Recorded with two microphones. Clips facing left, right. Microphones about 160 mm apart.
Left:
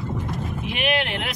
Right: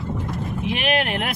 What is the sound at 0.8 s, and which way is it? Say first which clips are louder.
Speech: right 1 dB; 45° right (ahead or behind).